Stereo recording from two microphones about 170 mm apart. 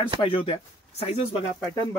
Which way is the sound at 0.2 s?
35° left (ahead or behind).